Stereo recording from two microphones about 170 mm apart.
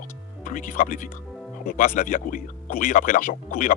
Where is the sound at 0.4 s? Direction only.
50° left (ahead or behind).